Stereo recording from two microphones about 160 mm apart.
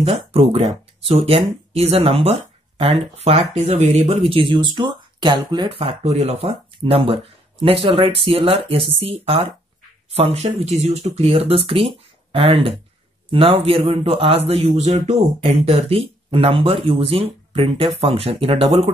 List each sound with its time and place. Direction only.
0.0 s speech: 40° right (ahead or behind)